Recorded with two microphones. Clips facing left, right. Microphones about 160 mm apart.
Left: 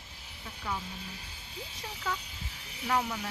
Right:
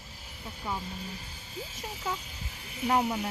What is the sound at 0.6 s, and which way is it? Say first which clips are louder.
Speech: right 1 dB; 20° right (ahead or behind).